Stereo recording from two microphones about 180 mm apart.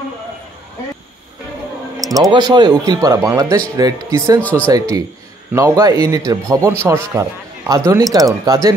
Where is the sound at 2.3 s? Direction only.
25° right (ahead or behind).